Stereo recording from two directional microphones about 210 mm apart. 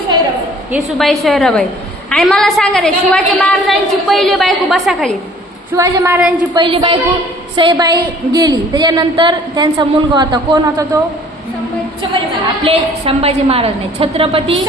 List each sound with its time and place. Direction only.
0.7 s a woman's voice: centre (ahead or behind)
5.7 s a woman's voice: 15° right (ahead or behind)
6.5 s a woman's voice: 20° right (ahead or behind)
12.6 s a woman's voice: 25° right (ahead or behind)